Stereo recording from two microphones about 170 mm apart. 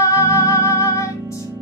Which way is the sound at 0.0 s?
15° left (ahead or behind).